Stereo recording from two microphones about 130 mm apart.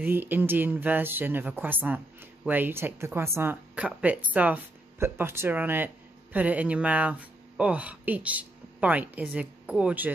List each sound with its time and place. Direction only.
0.0 s speech: 15° right (ahead or behind)